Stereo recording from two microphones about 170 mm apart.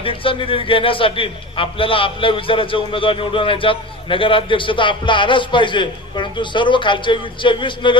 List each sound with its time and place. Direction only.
0.0 s a man's voice: 30° left (ahead or behind)